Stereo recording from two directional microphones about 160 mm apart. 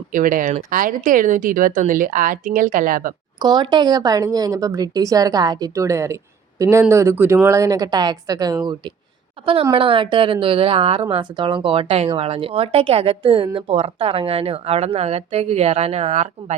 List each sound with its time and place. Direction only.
0.1 s a woman's voice: 55° right (ahead or behind)
3.3 s speech: 25° right (ahead or behind); by 16.6 s 45° right (ahead or behind)